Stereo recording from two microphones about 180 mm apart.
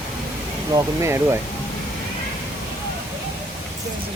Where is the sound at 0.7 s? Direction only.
15° right (ahead or behind).